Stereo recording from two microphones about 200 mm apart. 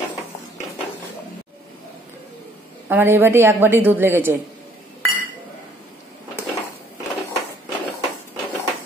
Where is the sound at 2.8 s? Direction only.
10° right (ahead or behind).